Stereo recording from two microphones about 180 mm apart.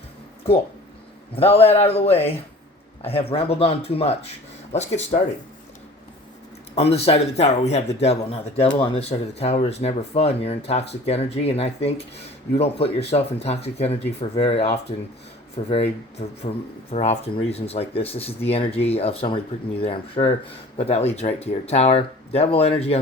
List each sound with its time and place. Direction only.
1.5 s speech: 35° left (ahead or behind)
6.7 s speech: 35° left (ahead or behind)